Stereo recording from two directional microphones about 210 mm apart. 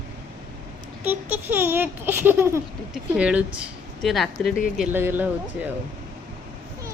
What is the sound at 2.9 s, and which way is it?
Speech, 5° right (ahead or behind).